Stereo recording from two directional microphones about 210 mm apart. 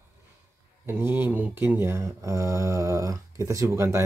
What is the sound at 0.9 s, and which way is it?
Speech, 10° right (ahead or behind).